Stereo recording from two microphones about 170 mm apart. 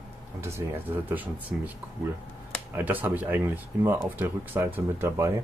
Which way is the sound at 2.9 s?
10° right (ahead or behind).